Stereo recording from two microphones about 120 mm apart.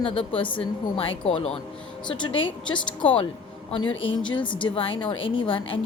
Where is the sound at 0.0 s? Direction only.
50° left (ahead or behind).